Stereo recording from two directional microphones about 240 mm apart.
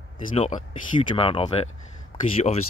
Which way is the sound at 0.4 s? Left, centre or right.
Centre.